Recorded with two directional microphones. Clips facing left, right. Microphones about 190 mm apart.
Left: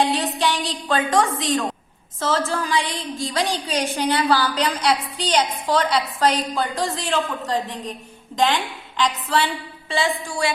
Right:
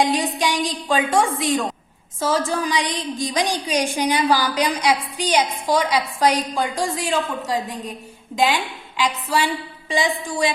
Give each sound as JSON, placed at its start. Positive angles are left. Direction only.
{"t": 0.0, "sound": "a woman's voice", "side_deg": -15}